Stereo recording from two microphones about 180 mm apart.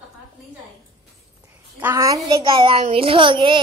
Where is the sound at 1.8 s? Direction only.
15° right (ahead or behind).